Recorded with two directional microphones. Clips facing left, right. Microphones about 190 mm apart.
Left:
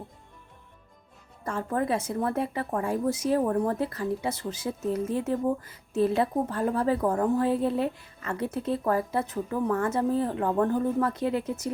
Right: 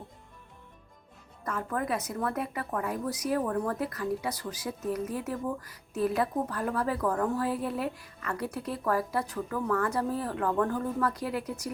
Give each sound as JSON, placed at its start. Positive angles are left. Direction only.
{"t": 1.5, "sound": "speech", "side_deg": 30}